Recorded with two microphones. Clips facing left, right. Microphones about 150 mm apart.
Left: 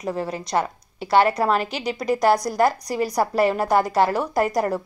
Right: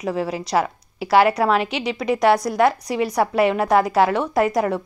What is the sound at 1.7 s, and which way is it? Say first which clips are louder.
Speech: right 2 dB; 35° left (ahead or behind).